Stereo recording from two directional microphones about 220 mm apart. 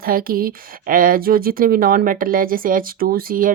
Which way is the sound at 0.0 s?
40° right (ahead or behind).